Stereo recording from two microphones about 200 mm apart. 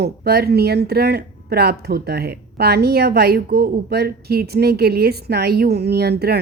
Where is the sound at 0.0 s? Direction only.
50° right (ahead or behind).